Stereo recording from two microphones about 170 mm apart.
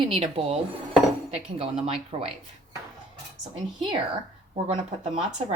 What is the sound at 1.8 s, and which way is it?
Speech, 35° right (ahead or behind).